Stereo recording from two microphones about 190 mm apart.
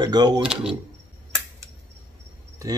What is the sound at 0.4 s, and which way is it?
Speech, 5° right (ahead or behind).